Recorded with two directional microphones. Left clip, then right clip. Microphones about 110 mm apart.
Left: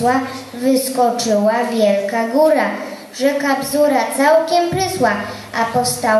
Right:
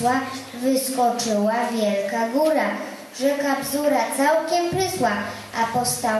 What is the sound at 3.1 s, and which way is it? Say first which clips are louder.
A woman's voice: left 5 dB; 15° left (ahead or behind).